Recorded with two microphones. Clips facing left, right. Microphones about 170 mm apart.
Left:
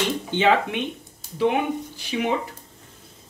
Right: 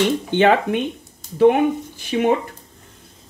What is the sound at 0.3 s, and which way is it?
Speech, 55° right (ahead or behind).